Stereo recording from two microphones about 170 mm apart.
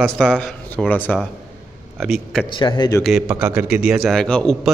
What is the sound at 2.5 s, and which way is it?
Speech, 25° left (ahead or behind).